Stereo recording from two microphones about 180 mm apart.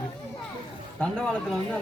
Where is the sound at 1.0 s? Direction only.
5° left (ahead or behind).